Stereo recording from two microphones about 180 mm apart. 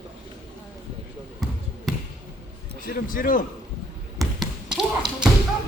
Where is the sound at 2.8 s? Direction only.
50° left (ahead or behind).